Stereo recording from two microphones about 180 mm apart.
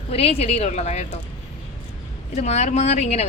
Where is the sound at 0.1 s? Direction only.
35° left (ahead or behind).